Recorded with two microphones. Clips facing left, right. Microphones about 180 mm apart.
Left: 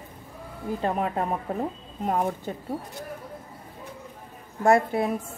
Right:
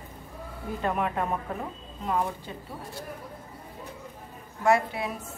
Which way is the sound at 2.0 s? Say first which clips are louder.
Left 3 dB; 45° left (ahead or behind).